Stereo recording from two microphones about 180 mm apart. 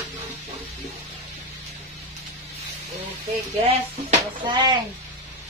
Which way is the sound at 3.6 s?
30° right (ahead or behind).